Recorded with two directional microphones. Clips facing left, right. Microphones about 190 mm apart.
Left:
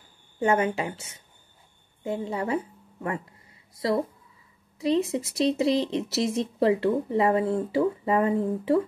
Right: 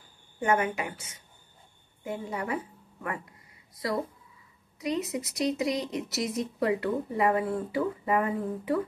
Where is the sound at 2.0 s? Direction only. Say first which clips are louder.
Left 5 dB; 25° left (ahead or behind).